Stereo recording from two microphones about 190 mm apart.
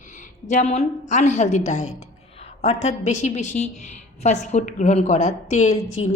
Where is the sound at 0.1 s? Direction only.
40° left (ahead or behind).